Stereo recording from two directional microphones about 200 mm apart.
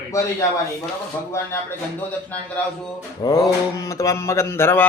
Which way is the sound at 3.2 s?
20° left (ahead or behind).